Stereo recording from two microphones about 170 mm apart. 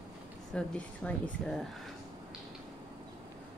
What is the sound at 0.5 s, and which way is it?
Speech, 5° left (ahead or behind).